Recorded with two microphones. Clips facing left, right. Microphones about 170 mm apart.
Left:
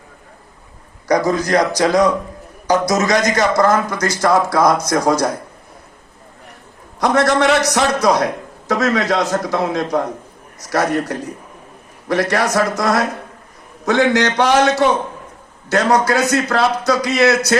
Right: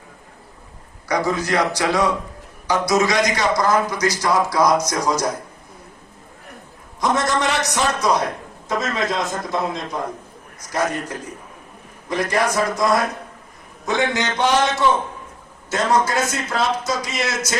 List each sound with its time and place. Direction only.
1.0 s a man's voice: 40° left (ahead or behind); by 5.3 s 60° left (ahead or behind)
7.0 s a man's voice: 65° left (ahead or behind)
15.7 s a man's voice: 70° left (ahead or behind)